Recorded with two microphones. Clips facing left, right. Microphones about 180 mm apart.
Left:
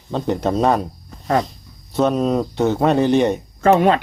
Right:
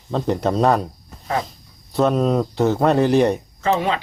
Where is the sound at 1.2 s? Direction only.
45° left (ahead or behind).